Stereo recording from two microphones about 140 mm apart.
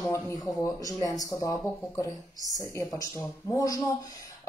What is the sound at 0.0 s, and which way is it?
Speech, 20° left (ahead or behind).